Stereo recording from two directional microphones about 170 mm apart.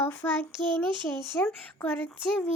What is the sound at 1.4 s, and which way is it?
Speech, 5° left (ahead or behind).